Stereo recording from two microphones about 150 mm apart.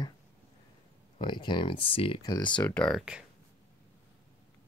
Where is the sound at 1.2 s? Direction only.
30° left (ahead or behind).